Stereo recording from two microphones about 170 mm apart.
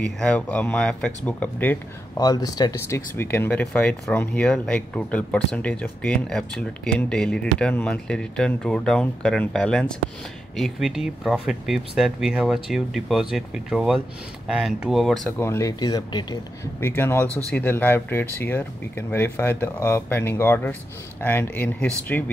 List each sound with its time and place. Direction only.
0.0 s speech: 5° left (ahead or behind)
2.1 s speech: 20° left (ahead or behind); by 15.3 s centre (ahead or behind)
15.3 s speech: 15° left (ahead or behind)
16.8 s speech: 15° left (ahead or behind)